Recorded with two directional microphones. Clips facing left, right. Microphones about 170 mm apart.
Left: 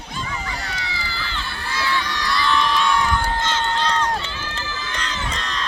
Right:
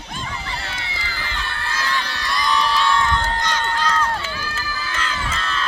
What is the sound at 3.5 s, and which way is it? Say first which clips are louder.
Run: even; 25° left (ahead or behind).